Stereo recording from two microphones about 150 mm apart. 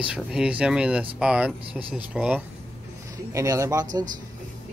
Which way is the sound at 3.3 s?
20° right (ahead or behind).